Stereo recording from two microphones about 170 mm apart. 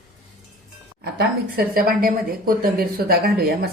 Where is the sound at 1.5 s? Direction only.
60° right (ahead or behind).